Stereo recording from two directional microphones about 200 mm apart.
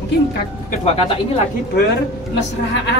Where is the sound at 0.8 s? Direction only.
30° left (ahead or behind).